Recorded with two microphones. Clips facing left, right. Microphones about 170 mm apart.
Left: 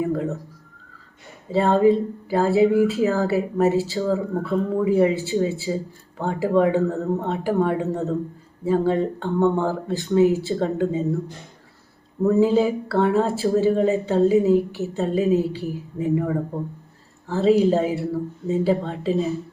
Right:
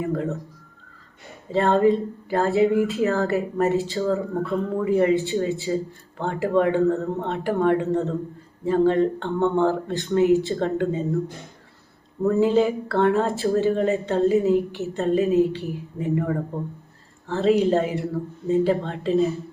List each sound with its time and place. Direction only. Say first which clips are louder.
0.1 s speech: left 1 dB; centre (ahead or behind)
1.5 s speech: left 1 dB; centre (ahead or behind)
12.2 s speech: left 1 dB; centre (ahead or behind)
15.3 s a woman's voice: right 1 dB; 35° left (ahead or behind)
15.6 s speech: left 2 dB; centre (ahead or behind)